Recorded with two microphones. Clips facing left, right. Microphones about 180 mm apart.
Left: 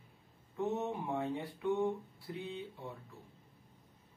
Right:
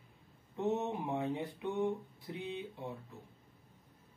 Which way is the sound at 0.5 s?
20° right (ahead or behind).